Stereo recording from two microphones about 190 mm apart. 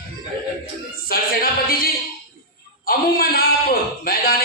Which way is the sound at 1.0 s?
50° left (ahead or behind).